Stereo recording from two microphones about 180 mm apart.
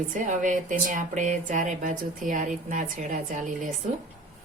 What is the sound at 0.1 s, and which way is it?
Speech, 45° right (ahead or behind).